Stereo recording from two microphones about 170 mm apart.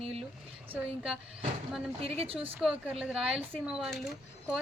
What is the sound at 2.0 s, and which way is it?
Speech, 35° right (ahead or behind).